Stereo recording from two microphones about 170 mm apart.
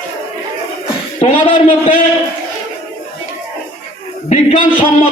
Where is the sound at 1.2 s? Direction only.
30° left (ahead or behind).